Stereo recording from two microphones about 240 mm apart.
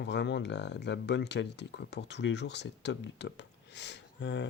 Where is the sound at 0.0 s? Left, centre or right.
Left.